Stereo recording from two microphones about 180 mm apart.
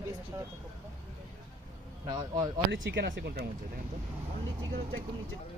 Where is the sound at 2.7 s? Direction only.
90° right; by 3.4 s 75° right (ahead or behind).